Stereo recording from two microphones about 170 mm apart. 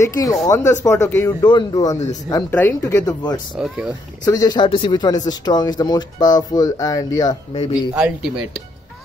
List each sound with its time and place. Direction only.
0.0 s speech: 20° left (ahead or behind)
1.4 s speech: 25° left (ahead or behind)
3.5 s speech: 5° right (ahead or behind)
4.2 s speech: 20° left (ahead or behind)
7.9 s speech: 5° right (ahead or behind)